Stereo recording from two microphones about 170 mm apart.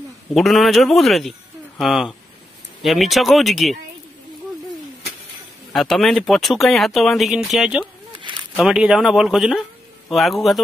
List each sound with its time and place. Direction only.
0.3 s speech: centre (ahead or behind)
5.7 s speech: centre (ahead or behind)
8.2 s a sound: 25° right (ahead or behind)
8.5 s speech: 5° right (ahead or behind)